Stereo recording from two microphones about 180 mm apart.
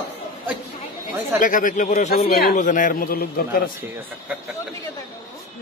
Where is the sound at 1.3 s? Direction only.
45° left (ahead or behind).